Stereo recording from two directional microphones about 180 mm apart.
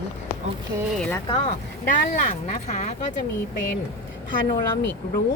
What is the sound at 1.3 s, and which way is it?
Speech, 35° left (ahead or behind).